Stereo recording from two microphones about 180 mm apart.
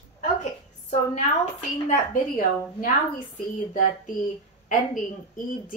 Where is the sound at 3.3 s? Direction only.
45° left (ahead or behind).